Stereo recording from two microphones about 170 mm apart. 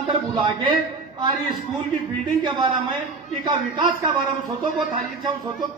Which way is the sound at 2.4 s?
25° right (ahead or behind).